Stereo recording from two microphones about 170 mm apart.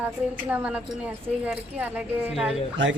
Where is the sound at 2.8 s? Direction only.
90° right.